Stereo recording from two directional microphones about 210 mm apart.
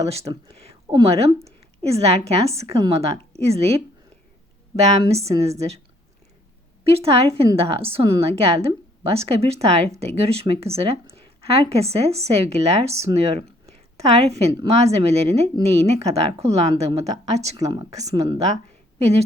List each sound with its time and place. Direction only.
0.5 s a woman's voice: 30° right (ahead or behind)
4.8 s speech: 30° right (ahead or behind)
6.8 s speech: 30° right (ahead or behind)
17.6 s speech: 20° right (ahead or behind)
18.4 s a sound: 30° right (ahead or behind)